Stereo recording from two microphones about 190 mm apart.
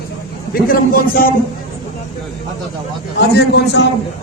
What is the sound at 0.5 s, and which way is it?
Speech, 50° left (ahead or behind).